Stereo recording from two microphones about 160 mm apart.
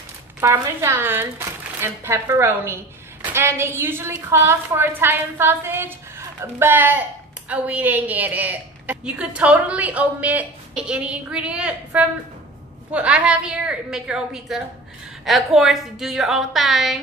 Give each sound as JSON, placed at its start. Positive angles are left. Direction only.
{"t": 0.4, "sound": "a woman's voice", "side_deg": -15}